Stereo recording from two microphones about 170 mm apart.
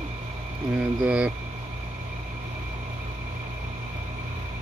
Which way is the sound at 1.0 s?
10° right (ahead or behind).